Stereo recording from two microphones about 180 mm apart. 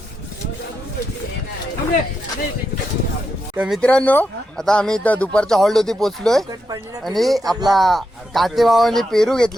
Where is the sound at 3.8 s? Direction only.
5° left (ahead or behind).